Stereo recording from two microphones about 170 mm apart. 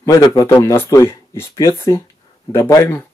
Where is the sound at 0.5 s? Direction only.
15° left (ahead or behind).